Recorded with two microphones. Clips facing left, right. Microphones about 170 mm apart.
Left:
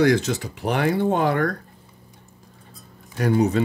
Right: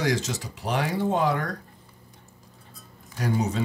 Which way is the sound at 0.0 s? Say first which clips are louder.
Left 8 dB; 60° left (ahead or behind).